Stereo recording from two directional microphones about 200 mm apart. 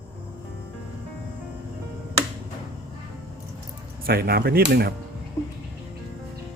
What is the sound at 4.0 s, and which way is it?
Speech, 50° right (ahead or behind).